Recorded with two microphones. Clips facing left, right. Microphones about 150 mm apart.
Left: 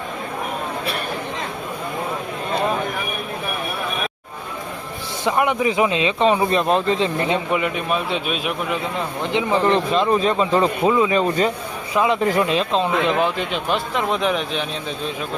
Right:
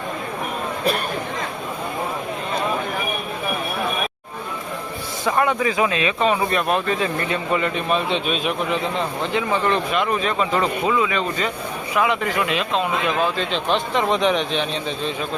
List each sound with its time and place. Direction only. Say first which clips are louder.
5.4 s speech: left 1 dB; 20° left (ahead or behind)
9.5 s speech: left 5 dB; 30° left (ahead or behind); by 15.1 s 5° left (ahead or behind)